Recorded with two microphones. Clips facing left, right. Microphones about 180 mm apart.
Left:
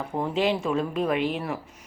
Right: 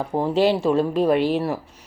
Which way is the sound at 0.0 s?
35° right (ahead or behind).